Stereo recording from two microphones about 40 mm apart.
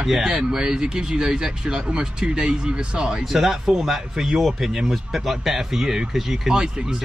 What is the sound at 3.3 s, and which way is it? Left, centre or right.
Speech, centre.